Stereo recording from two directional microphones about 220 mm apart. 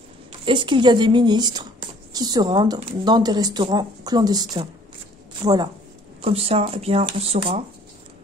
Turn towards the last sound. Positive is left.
turn(degrees=-25)  # may be behind; listen again after turning